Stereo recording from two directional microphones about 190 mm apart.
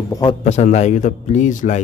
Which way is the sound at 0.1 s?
20° left (ahead or behind).